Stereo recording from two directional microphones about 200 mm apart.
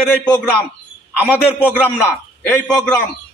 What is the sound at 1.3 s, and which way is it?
Speech, 10° left (ahead or behind).